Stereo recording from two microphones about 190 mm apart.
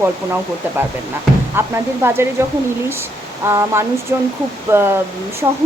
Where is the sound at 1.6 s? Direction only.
10° right (ahead or behind).